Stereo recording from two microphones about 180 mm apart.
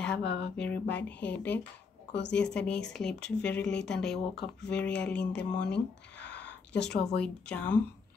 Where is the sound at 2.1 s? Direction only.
75° left (ahead or behind).